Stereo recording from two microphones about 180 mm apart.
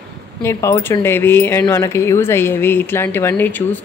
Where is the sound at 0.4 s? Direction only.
15° left (ahead or behind).